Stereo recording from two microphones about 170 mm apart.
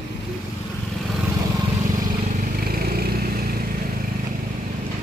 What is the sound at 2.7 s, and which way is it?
Vehicle, 65° right (ahead or behind).